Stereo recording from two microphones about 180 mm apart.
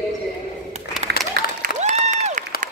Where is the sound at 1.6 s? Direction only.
40° right (ahead or behind).